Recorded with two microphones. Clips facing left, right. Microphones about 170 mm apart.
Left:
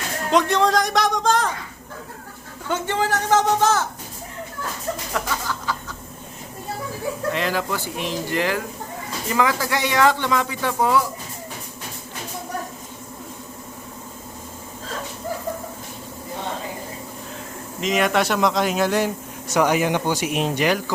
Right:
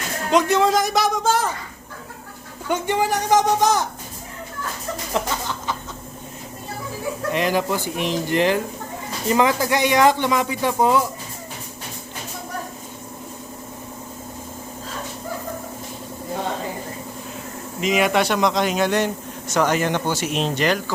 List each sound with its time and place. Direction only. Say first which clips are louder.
0.3 s speech: right 1 dB; centre (ahead or behind)
2.6 s speech: right 2 dB; 15° right (ahead or behind)
5.1 s speech: right 5 dB; 20° right (ahead or behind)
7.3 s speech: right 4 dB; 20° right (ahead or behind)
17.7 s speech: right 1 dB; 5° right (ahead or behind)